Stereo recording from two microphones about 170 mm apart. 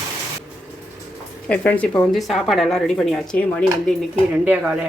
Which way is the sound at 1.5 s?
10° left (ahead or behind).